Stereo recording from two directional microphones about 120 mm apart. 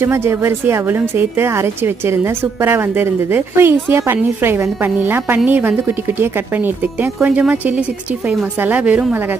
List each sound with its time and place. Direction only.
0.0 s a woman's voice: 20° right (ahead or behind)